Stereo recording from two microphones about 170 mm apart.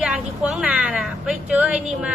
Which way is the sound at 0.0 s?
5° right (ahead or behind).